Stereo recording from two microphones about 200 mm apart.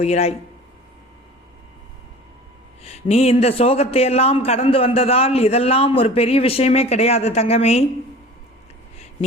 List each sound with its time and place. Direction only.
0.0 s a man's voice: 30° left (ahead or behind)
2.8 s a man's voice: 30° left (ahead or behind)